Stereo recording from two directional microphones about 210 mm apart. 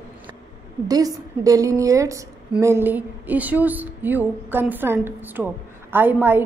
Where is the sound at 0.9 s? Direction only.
15° right (ahead or behind).